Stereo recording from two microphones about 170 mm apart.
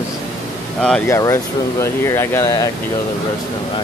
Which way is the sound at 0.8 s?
5° left (ahead or behind).